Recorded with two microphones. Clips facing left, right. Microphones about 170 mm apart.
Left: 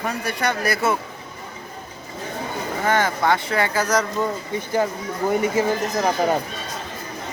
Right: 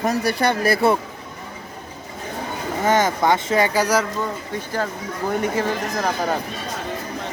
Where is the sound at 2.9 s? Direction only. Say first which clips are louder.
Right 2 dB; 20° right (ahead or behind).